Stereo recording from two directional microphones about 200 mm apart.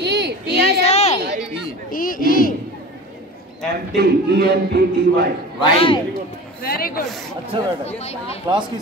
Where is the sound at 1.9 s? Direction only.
45° left (ahead or behind).